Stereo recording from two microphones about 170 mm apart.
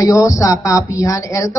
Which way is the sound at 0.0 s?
20° left (ahead or behind).